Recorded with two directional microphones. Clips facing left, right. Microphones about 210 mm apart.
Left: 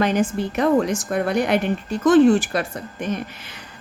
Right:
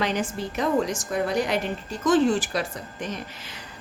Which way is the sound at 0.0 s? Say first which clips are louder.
Left 6 dB; 55° left (ahead or behind).